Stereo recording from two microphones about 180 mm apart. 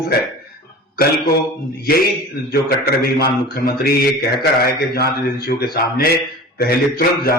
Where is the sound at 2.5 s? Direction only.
60° left (ahead or behind).